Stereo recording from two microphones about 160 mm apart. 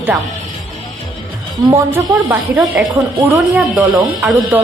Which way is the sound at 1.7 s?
15° right (ahead or behind).